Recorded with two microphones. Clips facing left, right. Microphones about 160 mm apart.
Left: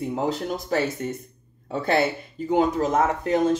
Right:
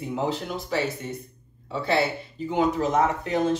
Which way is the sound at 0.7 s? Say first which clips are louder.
Left 2 dB; 45° left (ahead or behind).